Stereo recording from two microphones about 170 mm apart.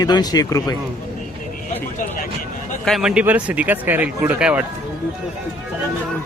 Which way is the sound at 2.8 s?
Centre (ahead or behind).